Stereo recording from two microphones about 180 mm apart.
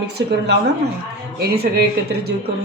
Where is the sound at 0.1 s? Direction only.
70° right (ahead or behind).